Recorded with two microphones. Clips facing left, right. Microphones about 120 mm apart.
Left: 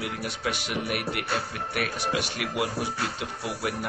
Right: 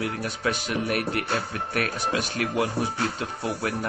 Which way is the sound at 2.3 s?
35° right (ahead or behind).